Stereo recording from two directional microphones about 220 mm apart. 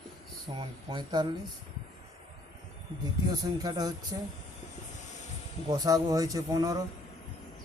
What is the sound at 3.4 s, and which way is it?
Speech, 20° right (ahead or behind).